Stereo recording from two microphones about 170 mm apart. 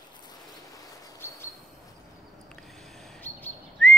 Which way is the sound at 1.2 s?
15° left (ahead or behind).